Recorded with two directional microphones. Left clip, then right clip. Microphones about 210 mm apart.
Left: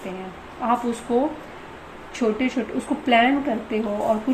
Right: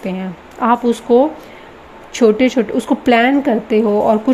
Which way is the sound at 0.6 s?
50° right (ahead or behind).